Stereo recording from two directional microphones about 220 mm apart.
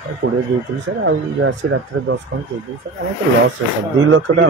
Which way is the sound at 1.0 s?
60° right (ahead or behind).